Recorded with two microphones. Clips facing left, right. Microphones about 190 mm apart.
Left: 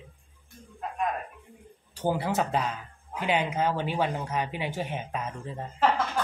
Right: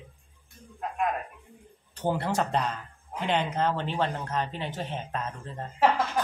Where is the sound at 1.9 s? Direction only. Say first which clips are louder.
Even; 5° left (ahead or behind).